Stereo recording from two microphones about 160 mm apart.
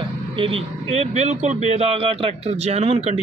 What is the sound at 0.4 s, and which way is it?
Speech, 35° right (ahead or behind).